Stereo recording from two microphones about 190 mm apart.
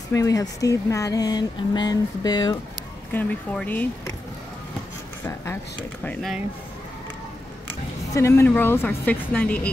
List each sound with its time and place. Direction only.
0.1 s speech: 15° left (ahead or behind)
3.1 s a woman's voice: 10° left (ahead or behind)
5.2 s a sound: 10° left (ahead or behind)
6.0 s speech: centre (ahead or behind)
8.1 s a woman's voice: 15° left (ahead or behind)